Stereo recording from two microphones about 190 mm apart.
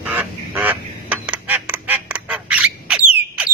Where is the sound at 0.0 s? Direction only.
10° right (ahead or behind).